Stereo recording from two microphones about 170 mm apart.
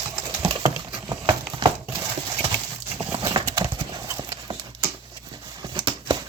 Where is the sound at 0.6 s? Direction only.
20° right (ahead or behind).